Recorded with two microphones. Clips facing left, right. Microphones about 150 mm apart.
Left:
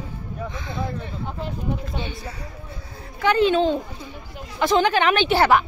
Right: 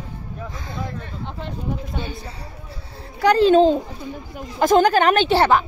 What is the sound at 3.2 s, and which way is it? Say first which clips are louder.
A child's voice: right 5 dB; 40° right (ahead or behind).